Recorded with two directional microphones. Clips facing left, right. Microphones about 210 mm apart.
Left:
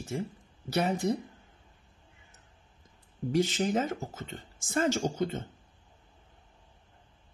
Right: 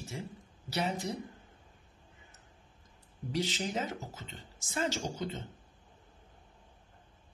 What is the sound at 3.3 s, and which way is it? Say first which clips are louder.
Speech: left 7 dB; 50° left (ahead or behind).